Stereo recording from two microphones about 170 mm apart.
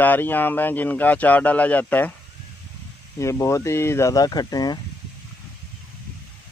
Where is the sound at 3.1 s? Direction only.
15° left (ahead or behind).